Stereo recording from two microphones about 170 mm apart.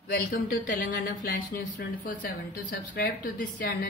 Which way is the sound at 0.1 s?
60° left (ahead or behind).